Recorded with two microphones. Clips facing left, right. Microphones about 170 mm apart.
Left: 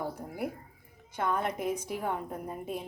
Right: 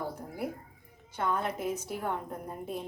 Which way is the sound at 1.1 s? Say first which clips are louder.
Left 1 dB; 10° left (ahead or behind).